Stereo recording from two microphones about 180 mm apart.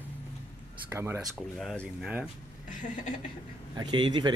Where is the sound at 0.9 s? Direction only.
10° right (ahead or behind).